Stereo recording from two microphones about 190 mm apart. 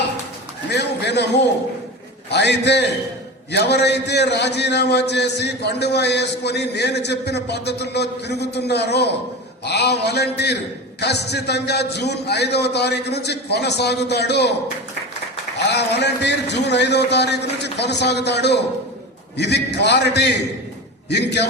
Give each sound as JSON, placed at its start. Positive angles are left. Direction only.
{"t": 0.7, "sound": "a man's voice", "side_deg": 60}
{"t": 15.6, "sound": "a man's voice", "side_deg": 65}